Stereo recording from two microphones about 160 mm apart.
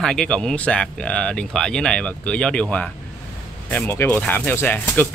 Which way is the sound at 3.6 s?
10° left (ahead or behind).